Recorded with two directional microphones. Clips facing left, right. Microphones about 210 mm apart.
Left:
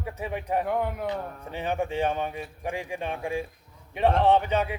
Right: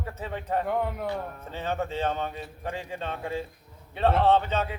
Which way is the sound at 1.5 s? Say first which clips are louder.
Left 2 dB; 15° left (ahead or behind).